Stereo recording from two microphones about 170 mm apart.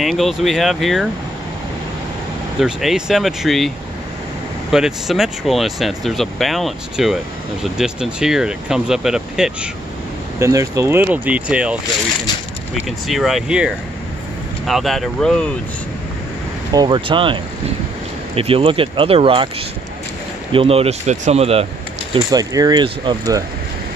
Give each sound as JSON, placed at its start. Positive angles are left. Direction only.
{"t": 0.0, "sound": "speech", "side_deg": 0}
{"t": 2.6, "sound": "speech", "side_deg": -5}
{"t": 10.4, "sound": "speech", "side_deg": -20}
{"t": 16.7, "sound": "speech", "side_deg": -25}
{"t": 20.5, "sound": "speech", "side_deg": -35}
{"t": 22.1, "sound": "speech", "side_deg": -20}